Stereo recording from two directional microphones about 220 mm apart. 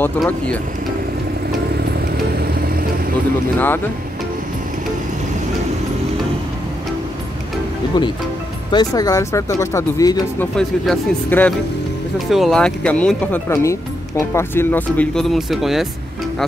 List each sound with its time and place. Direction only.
0.0 s speech: 5° left (ahead or behind)
2.3 s vehicle: 45° right (ahead or behind)
3.5 s speech: 10° left (ahead or behind)
8.7 s speech: 15° left (ahead or behind)
10.5 s speech: 5° left (ahead or behind)